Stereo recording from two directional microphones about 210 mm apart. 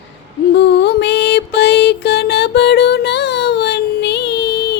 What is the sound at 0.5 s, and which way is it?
Music, 55° left (ahead or behind).